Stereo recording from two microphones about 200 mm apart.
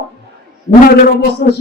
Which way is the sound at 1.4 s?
45° left (ahead or behind).